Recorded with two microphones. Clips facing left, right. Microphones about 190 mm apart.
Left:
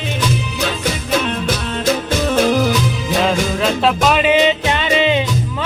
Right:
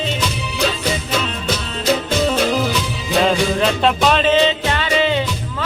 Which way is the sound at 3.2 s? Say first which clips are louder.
Right 1 dB; centre (ahead or behind).